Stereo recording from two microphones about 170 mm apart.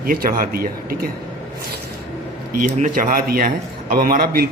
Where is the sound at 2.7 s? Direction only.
45° right (ahead or behind).